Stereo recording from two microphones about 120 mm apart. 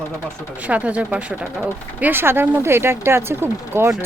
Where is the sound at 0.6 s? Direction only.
10° right (ahead or behind).